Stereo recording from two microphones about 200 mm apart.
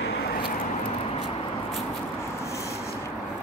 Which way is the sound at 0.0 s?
55° left (ahead or behind).